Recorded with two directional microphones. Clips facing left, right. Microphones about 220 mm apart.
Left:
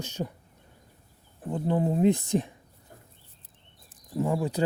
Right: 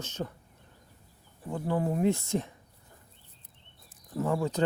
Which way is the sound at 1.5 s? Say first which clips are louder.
Left 3 dB; 20° left (ahead or behind).